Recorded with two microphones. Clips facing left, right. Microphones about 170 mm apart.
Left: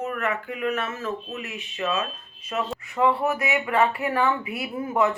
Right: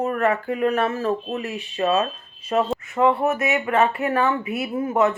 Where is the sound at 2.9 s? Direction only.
20° right (ahead or behind).